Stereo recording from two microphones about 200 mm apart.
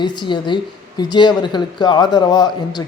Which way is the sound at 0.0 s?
20° left (ahead or behind).